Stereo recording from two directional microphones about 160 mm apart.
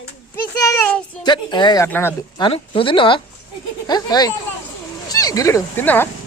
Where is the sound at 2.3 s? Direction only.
30° left (ahead or behind); by 6.1 s 15° left (ahead or behind).